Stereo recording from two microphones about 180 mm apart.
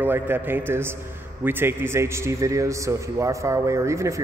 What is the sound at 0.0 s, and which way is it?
A man's voice, 10° right (ahead or behind).